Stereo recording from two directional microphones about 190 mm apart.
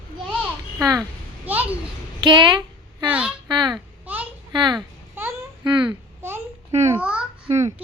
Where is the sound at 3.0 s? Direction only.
5° right (ahead or behind).